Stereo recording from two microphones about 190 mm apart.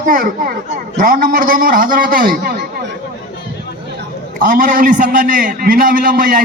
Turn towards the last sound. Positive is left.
turn(degrees=-45)  # may be behind; listen again after turning